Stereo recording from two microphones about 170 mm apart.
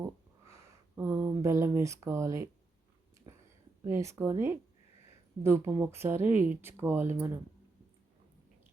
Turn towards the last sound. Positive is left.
turn(degrees=-15)  # may be behind; listen again after turning